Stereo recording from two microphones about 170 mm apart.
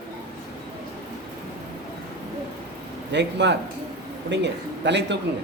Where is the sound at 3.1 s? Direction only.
90° right.